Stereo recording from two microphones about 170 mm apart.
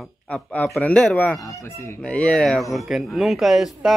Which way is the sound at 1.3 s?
20° left (ahead or behind).